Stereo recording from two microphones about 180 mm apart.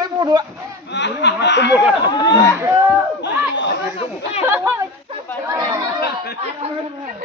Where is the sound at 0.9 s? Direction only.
75° left (ahead or behind).